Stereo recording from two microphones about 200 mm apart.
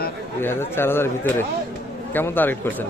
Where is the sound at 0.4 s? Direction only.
10° left (ahead or behind).